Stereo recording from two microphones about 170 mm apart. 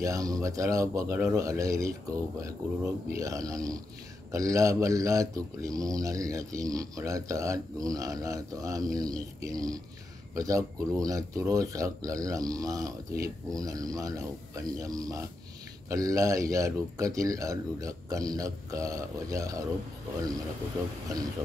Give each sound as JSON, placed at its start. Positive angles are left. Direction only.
{"t": 0.0, "sound": "speech", "side_deg": -20}